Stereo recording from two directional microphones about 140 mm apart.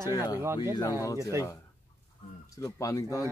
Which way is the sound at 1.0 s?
20° left (ahead or behind).